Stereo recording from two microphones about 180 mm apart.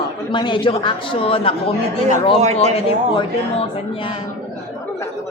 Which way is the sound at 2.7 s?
30° left (ahead or behind).